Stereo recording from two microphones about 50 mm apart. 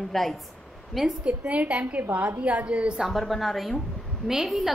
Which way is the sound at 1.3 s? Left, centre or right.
Right.